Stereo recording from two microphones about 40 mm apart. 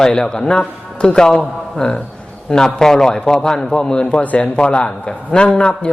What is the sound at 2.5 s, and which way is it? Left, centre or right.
Mantra, centre.